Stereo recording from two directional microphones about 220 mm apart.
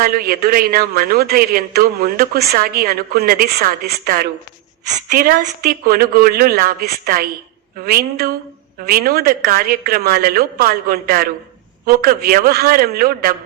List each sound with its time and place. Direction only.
0.0 s a man's voice: 40° right (ahead or behind)